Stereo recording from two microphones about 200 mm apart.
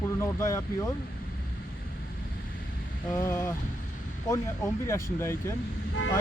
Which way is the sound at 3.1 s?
15° left (ahead or behind).